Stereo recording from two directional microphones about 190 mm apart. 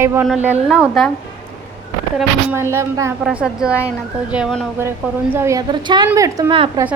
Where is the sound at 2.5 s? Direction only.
15° right (ahead or behind).